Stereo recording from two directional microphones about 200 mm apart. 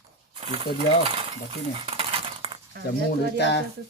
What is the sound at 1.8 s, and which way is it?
Cutlery, 30° right (ahead or behind).